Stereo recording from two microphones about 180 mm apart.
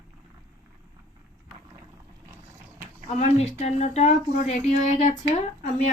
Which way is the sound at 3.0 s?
35° left (ahead or behind).